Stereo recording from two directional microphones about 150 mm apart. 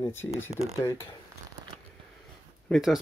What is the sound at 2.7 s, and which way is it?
Speech, centre (ahead or behind).